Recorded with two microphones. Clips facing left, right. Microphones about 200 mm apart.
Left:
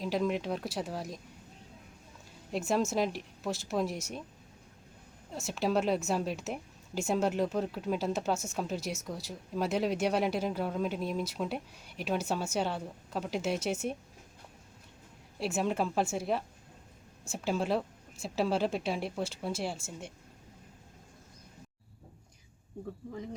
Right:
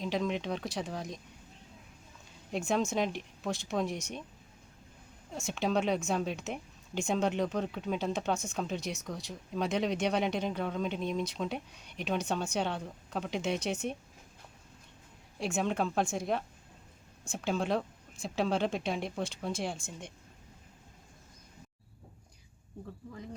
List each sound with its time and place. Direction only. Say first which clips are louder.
0.0 s speech: left 2 dB; 5° left (ahead or behind)
2.5 s speech: left 1 dB; 5° left (ahead or behind)
5.3 s speech: left 1 dB; 5° left (ahead or behind)
15.4 s speech: left 1 dB; 5° left (ahead or behind)